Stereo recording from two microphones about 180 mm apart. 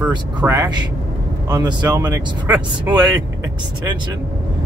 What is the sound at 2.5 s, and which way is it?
Speech, 10° right (ahead or behind).